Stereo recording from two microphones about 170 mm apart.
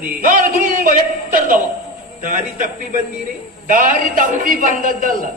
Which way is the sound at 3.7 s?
50° right (ahead or behind).